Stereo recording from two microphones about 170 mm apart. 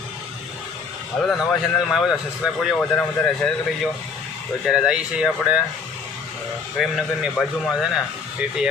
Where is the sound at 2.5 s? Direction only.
5° left (ahead or behind).